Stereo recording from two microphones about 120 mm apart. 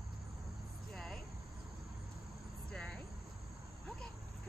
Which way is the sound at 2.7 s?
5° left (ahead or behind).